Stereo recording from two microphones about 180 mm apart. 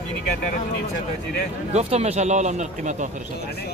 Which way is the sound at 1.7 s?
35° right (ahead or behind).